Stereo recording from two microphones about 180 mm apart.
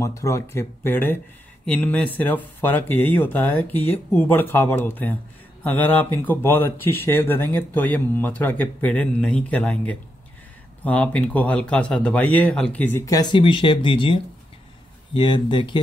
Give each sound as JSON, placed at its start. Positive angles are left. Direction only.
{"t": 0.0, "sound": "speech", "side_deg": 15}